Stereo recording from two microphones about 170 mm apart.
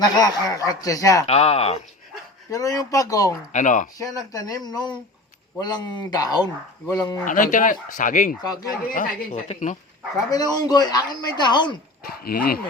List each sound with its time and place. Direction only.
0.0 s speech: 25° left (ahead or behind)
1.3 s speech: 40° left (ahead or behind)
2.5 s speech: 20° left (ahead or behind)
3.5 s speech: 45° left (ahead or behind)
3.9 s speech: 20° left (ahead or behind)
7.3 s speech: 50° left (ahead or behind)
10.2 s speech: 20° left (ahead or behind)
12.0 s speech: 65° left (ahead or behind)